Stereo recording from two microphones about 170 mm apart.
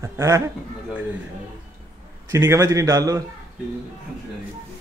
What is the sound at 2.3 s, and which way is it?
Speech, 15° right (ahead or behind).